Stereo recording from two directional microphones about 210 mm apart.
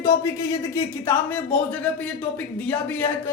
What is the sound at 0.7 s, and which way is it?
Speech, 10° left (ahead or behind).